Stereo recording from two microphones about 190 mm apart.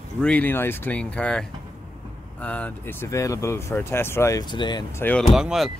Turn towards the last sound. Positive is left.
turn(degrees=0)  # may be behind; listen again after turning